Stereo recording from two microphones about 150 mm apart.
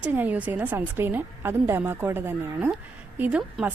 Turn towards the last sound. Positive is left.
turn(degrees=-10)  # may be behind; listen again after turning